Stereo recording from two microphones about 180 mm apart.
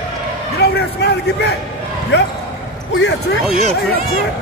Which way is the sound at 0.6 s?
65° left (ahead or behind).